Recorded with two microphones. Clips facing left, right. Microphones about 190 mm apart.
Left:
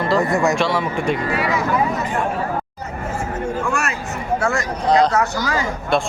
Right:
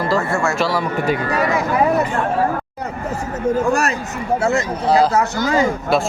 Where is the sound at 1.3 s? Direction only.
45° right (ahead or behind).